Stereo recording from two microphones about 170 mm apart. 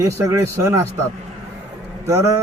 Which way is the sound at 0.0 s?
15° right (ahead or behind).